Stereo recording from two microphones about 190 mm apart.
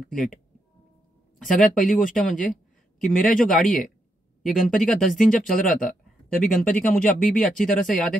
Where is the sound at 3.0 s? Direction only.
5° left (ahead or behind).